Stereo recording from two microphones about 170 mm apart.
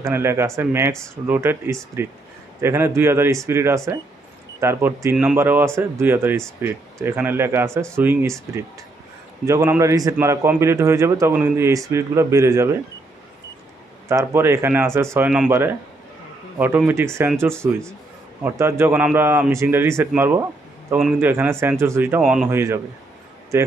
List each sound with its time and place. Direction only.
0.0 s a man's voice: 15° right (ahead or behind)
14.0 s speech: 15° right (ahead or behind)
22.5 s speech: 15° right (ahead or behind)